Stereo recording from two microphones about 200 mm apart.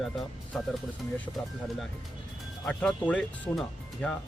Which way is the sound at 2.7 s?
5° left (ahead or behind).